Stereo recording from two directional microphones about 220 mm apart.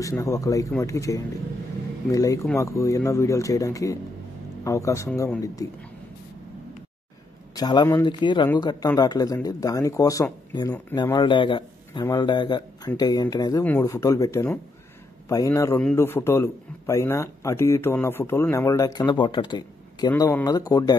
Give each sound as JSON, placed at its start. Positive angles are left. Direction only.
{"t": 0.0, "sound": "speech", "side_deg": 15}
{"t": 7.5, "sound": "speech", "side_deg": 15}